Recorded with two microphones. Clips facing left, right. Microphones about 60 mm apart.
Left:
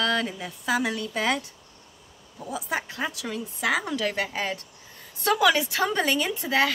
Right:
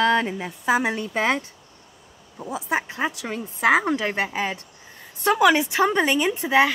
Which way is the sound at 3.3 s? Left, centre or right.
Right.